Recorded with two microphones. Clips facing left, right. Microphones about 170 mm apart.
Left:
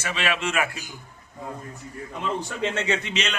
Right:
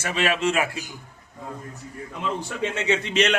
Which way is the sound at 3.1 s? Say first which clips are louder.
Right 8 dB; 60° right (ahead or behind).